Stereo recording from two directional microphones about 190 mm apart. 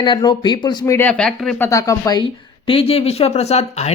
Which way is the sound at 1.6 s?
15° left (ahead or behind).